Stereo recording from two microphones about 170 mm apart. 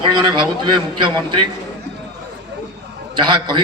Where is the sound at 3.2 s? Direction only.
30° right (ahead or behind).